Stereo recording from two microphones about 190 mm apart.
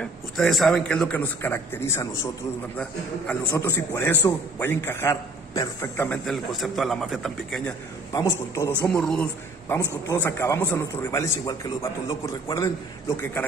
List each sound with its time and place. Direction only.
0.0 s a man's voice: centre (ahead or behind)
6.2 s a man's voice: centre (ahead or behind)
8.1 s a man's voice: 15° left (ahead or behind)
9.0 s a man's voice: 5° left (ahead or behind)